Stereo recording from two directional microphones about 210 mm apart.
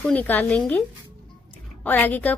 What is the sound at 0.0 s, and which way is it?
A woman's voice, 5° left (ahead or behind).